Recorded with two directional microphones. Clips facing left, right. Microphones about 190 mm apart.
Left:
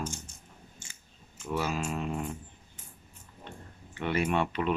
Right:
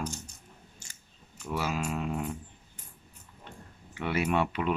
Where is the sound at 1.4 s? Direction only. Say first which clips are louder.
Even; 5° right (ahead or behind).